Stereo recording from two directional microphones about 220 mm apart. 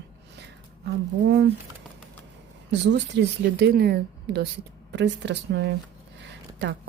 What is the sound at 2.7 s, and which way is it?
A woman's voice, 50° right (ahead or behind).